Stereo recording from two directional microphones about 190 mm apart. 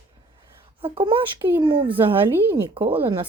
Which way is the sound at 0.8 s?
25° right (ahead or behind).